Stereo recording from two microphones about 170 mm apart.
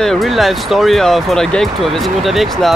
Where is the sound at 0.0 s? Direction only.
Centre (ahead or behind).